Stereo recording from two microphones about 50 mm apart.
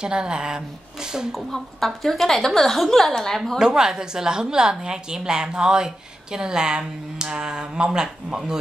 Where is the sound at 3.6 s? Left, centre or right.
Centre.